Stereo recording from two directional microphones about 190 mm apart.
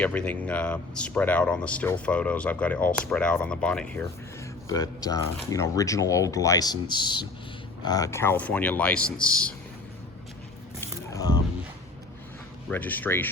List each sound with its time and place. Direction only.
0.0 s speech: 5° left (ahead or behind)
4.7 s speech: 20° left (ahead or behind)
10.8 s biting: 15° left (ahead or behind)
12.7 s speech: 10° left (ahead or behind)